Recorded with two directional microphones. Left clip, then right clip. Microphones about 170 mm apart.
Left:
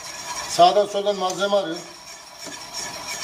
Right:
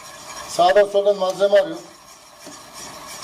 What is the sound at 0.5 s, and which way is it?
Speech, 55° right (ahead or behind).